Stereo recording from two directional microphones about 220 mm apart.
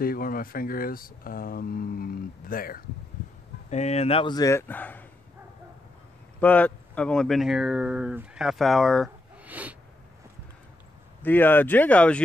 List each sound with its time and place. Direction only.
0.0 s speech: 40° left (ahead or behind)
3.7 s speech: 30° left (ahead or behind); by 5.0 s 10° left (ahead or behind)
6.4 s speech: 5° left (ahead or behind)
11.2 s speech: 10° left (ahead or behind)